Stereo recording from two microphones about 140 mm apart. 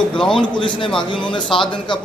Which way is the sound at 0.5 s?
35° left (ahead or behind).